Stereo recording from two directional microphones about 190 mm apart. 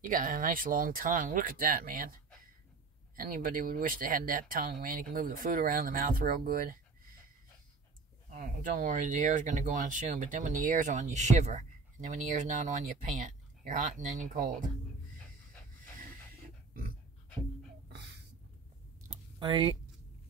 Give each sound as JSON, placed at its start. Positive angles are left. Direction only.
{"t": 0.0, "sound": "speech", "side_deg": -45}
{"t": 3.2, "sound": "speech", "side_deg": -45}
{"t": 8.3, "sound": "speech", "side_deg": -40}
{"t": 19.4, "sound": "speech", "side_deg": -25}